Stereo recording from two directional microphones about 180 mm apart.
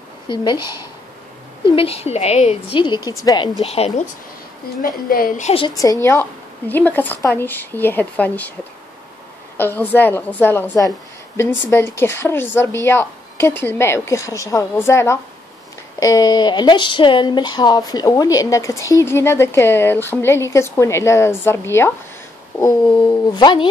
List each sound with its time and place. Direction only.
0.3 s speech: 25° left (ahead or behind)
1.8 s a woman's voice: 35° left (ahead or behind)
3.6 s a woman's voice: 35° left (ahead or behind)
4.8 s a woman's voice: 50° left (ahead or behind)
6.7 s speech: 10° left (ahead or behind)
9.6 s speech: 10° left (ahead or behind)